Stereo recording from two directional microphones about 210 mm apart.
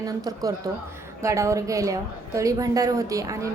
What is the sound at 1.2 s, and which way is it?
A woman's voice, 15° right (ahead or behind).